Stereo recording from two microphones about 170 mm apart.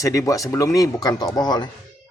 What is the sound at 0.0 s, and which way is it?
Speech, 20° left (ahead or behind).